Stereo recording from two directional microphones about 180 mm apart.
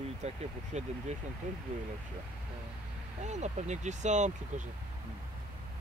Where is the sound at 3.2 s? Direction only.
40° right (ahead or behind).